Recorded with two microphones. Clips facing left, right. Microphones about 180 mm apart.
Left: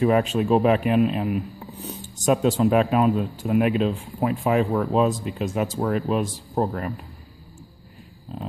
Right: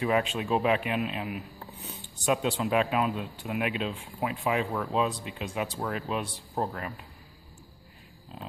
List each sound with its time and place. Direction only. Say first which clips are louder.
0.0 s a man's voice: left 7 dB; 45° left (ahead or behind)